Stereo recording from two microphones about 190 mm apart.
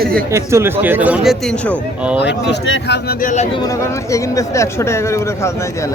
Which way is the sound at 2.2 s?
70° left (ahead or behind).